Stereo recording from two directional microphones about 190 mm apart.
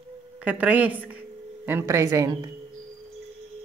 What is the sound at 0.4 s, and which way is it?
Speech, 5° right (ahead or behind).